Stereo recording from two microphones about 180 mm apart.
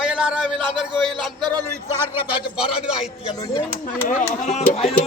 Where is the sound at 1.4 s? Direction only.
20° right (ahead or behind).